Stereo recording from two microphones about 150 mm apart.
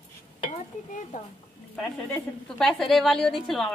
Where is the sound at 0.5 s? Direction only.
55° left (ahead or behind).